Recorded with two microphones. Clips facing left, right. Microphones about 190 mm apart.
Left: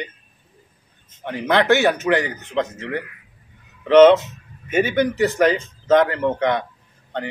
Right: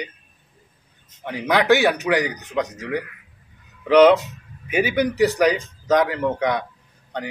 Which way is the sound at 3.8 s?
5° right (ahead or behind).